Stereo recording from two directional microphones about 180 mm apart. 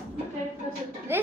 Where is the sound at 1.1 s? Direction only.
10° right (ahead or behind).